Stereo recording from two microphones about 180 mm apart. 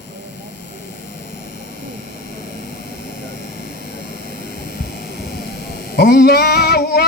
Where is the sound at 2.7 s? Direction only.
65° left (ahead or behind).